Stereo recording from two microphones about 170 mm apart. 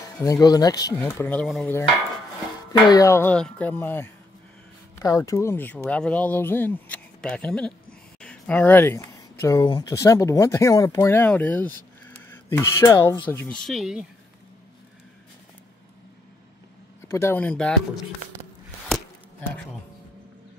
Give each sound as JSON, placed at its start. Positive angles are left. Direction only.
{"t": 0.2, "sound": "speech", "side_deg": 20}
{"t": 2.9, "sound": "speech", "side_deg": 20}
{"t": 17.1, "sound": "speech", "side_deg": 15}